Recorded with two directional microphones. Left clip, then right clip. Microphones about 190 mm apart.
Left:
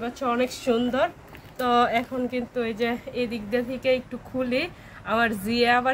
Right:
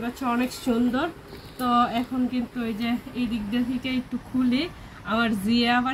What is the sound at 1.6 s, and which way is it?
Speech, 45° left (ahead or behind).